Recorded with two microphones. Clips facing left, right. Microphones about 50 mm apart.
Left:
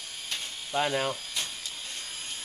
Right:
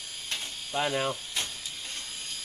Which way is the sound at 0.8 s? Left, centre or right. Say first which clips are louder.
Left 1 dB; centre.